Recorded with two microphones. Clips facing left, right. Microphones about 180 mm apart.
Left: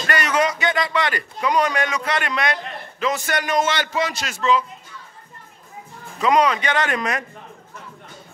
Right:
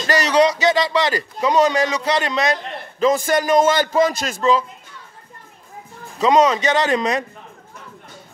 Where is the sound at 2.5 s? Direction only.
35° right (ahead or behind).